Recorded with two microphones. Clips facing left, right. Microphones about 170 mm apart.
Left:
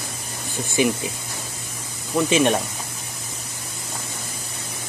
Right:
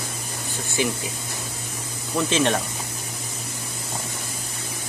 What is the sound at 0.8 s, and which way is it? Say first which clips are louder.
Speech: left 5 dB; 15° left (ahead or behind).